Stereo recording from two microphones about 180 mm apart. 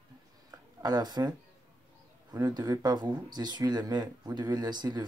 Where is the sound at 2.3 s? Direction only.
20° right (ahead or behind).